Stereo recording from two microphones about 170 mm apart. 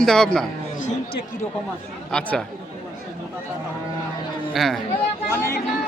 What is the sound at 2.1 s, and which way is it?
Speech, 5° left (ahead or behind).